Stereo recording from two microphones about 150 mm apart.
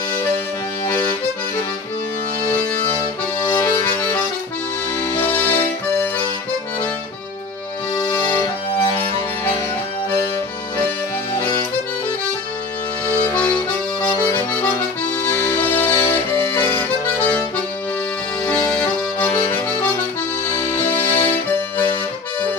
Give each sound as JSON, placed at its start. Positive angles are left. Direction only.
{"t": 3.6, "sound": "accordion", "side_deg": 15}
{"t": 5.5, "sound": "music", "side_deg": 10}
{"t": 7.9, "sound": "music", "side_deg": 30}
{"t": 11.3, "sound": "accordion", "side_deg": 25}
{"t": 14.5, "sound": "accordion", "side_deg": 10}
{"t": 15.3, "sound": "music", "side_deg": 10}
{"t": 15.9, "sound": "accordion", "side_deg": 25}
{"t": 18.5, "sound": "accordion", "side_deg": 10}
{"t": 20.5, "sound": "accordion", "side_deg": 25}